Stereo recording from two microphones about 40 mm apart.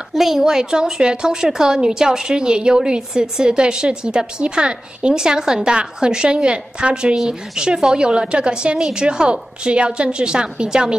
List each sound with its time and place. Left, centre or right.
0.1 s a woman's voice: centre; by 11.0 s right